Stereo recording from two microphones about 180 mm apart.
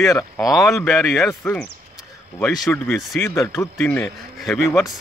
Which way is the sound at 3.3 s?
20° left (ahead or behind).